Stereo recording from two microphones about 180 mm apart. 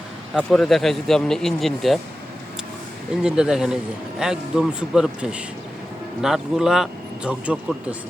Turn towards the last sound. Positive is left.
turn(degrees=-5)  # may be behind; listen again after turning